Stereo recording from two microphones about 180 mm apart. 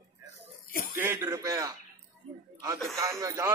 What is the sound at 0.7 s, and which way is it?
Speech, 50° left (ahead or behind).